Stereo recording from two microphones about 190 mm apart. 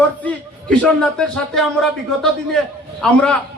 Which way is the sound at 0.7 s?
5° left (ahead or behind).